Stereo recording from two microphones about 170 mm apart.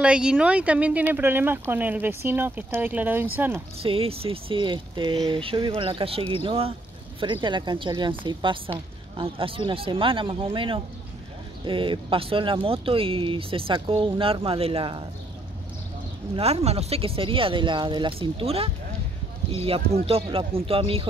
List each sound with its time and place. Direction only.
0.0 s speech: 5° right (ahead or behind)
3.8 s a woman's voice: 35° right (ahead or behind)
16.3 s speech: 35° right (ahead or behind)